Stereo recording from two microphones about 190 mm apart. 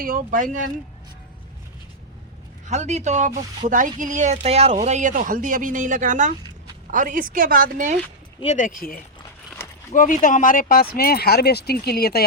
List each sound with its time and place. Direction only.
0.0 s speech: 45° right (ahead or behind)
2.6 s speech: 35° right (ahead or behind)
8.5 s speech: 45° left (ahead or behind)